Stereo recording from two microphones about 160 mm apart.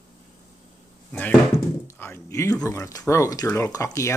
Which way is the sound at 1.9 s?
15° left (ahead or behind).